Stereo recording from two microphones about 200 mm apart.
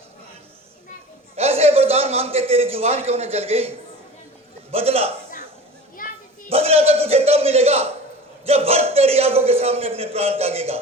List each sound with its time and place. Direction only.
1.4 s a man's voice: 30° right (ahead or behind)
4.7 s a man's voice: 30° right (ahead or behind)
6.0 s children playing: 45° left (ahead or behind)
6.5 s a man's voice: 30° right (ahead or behind)